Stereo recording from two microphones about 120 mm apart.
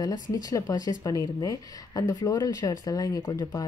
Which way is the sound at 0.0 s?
30° left (ahead or behind).